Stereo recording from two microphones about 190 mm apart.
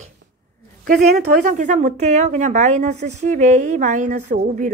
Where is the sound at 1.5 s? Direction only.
40° right (ahead or behind).